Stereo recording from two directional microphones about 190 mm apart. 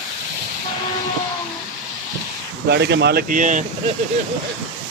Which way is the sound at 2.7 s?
65° right (ahead or behind).